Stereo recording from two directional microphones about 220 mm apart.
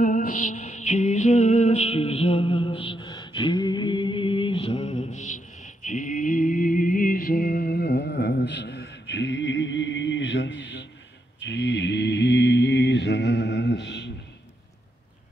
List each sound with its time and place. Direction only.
0.0 s music: 40° left (ahead or behind); by 10.9 s 55° left (ahead or behind)
11.4 s mantra: 55° left (ahead or behind)